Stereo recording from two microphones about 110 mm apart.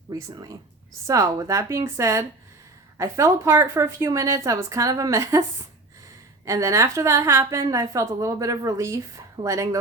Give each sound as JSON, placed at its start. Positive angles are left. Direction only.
{"t": 0.1, "sound": "speech", "side_deg": -35}
{"t": 6.4, "sound": "speech", "side_deg": -30}